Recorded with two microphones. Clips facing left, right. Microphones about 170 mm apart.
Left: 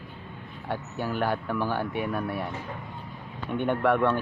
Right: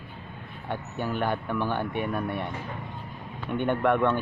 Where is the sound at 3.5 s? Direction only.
5° left (ahead or behind).